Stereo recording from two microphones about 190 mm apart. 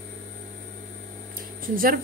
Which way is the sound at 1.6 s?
50° right (ahead or behind).